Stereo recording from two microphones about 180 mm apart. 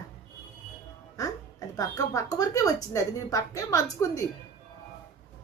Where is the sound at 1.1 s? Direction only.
20° left (ahead or behind).